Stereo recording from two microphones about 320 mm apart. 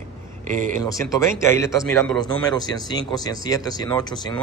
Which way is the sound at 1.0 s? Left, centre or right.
Centre.